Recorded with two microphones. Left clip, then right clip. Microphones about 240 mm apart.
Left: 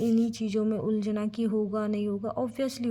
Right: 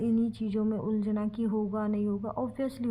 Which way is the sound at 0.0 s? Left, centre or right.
Left.